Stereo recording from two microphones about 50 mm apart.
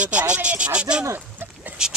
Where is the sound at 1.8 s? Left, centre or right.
Centre.